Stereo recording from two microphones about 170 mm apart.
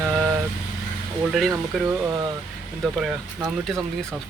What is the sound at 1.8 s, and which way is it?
Speech, 15° right (ahead or behind).